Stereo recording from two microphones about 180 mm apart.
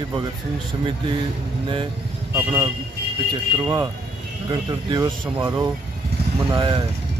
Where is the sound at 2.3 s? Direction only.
15° right (ahead or behind).